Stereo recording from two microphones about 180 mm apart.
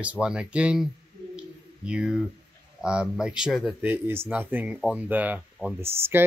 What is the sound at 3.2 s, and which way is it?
Speech, 5° right (ahead or behind).